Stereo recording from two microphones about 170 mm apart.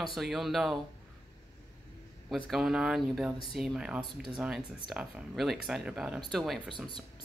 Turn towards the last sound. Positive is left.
turn(degrees=0)  # may be behind; listen again after turning